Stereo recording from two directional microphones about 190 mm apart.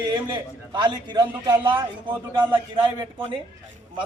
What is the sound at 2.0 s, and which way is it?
Speech, 10° right (ahead or behind).